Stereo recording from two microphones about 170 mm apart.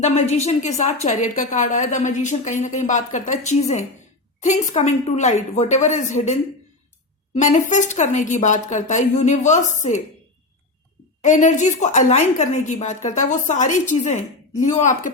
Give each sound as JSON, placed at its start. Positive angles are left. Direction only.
{"t": 0.0, "sound": "a woman's voice", "side_deg": 40}
{"t": 11.2, "sound": "a woman's voice", "side_deg": 45}